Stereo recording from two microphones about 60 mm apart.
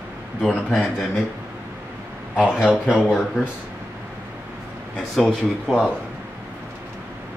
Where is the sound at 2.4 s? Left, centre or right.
Centre.